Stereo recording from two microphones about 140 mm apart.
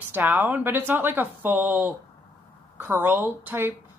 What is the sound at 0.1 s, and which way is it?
Speech, 15° right (ahead or behind).